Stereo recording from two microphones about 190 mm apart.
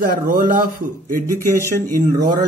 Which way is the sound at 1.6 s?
15° right (ahead or behind).